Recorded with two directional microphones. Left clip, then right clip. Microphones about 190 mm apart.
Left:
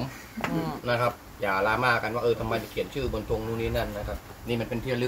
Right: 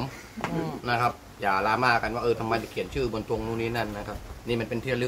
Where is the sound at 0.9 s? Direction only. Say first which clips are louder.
Right 1 dB; 20° right (ahead or behind).